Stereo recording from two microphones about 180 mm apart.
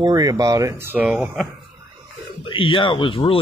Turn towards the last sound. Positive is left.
turn(degrees=30)  # may be behind; listen again after turning